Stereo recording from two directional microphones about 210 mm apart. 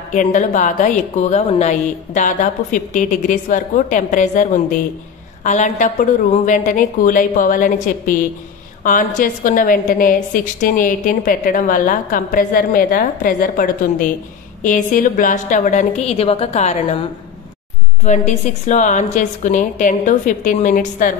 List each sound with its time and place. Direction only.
0.1 s a woman's voice: 35° left (ahead or behind)
18.0 s a woman's voice: 35° left (ahead or behind)